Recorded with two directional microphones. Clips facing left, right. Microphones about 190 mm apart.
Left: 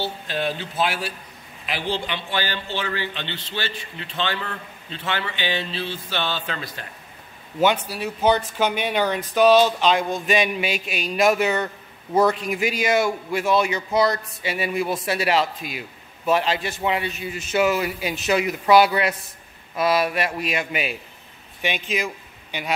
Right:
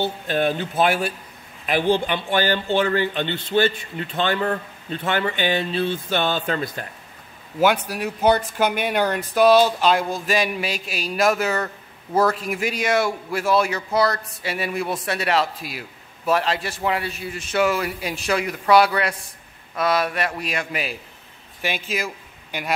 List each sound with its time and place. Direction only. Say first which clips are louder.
0.0 s speech: right 4 dB; 50° right (ahead or behind)
7.6 s speech: right 1 dB; 10° right (ahead or behind)